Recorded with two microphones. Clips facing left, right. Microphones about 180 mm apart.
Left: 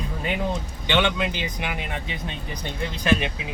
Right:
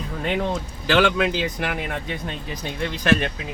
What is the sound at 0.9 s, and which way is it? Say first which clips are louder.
Speech: right 4 dB; 90° right.